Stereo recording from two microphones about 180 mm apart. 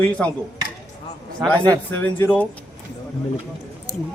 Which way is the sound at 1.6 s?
20° right (ahead or behind).